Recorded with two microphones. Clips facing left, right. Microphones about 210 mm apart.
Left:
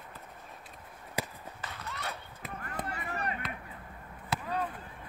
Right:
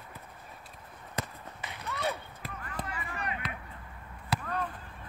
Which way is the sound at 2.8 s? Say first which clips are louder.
Left 4 dB; 40° left (ahead or behind).